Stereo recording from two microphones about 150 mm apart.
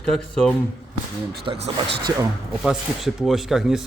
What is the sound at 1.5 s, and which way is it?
Speech, 35° right (ahead or behind).